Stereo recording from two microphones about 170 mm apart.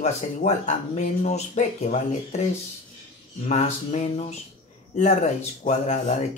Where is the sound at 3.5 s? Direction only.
45° left (ahead or behind).